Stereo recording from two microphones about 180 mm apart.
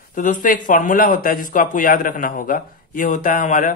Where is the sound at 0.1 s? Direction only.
45° left (ahead or behind).